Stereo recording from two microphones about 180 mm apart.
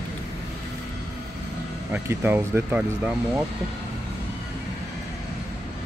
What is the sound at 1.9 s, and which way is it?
Speech, 15° right (ahead or behind).